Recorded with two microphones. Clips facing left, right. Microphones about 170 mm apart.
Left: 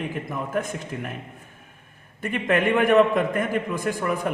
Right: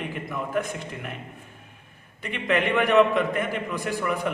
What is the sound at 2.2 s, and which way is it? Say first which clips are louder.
A man's voice: left 2 dB; 50° left (ahead or behind).